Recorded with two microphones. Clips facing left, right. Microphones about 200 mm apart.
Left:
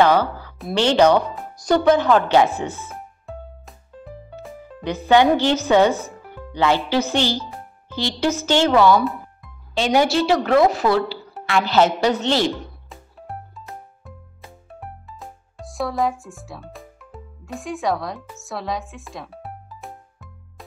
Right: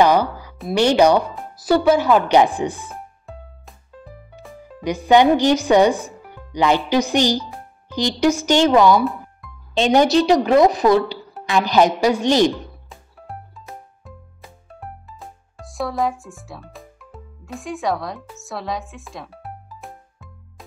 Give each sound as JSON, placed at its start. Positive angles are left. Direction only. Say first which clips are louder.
{"t": 0.0, "sound": "a woman's voice", "louder": "right 1 dB", "side_deg": -15}
{"t": 2.9, "sound": "music", "louder": "left 1 dB", "side_deg": 0}
{"t": 4.8, "sound": "a woman's voice", "louder": "right 2 dB", "side_deg": -15}
{"t": 14.0, "sound": "music", "louder": "even", "side_deg": 0}